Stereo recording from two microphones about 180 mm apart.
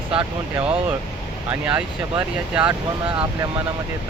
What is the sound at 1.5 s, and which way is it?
Speech, 10° right (ahead or behind).